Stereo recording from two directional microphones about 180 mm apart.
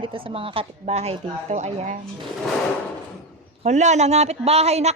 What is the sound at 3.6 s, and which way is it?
A woman's voice, 40° right (ahead or behind).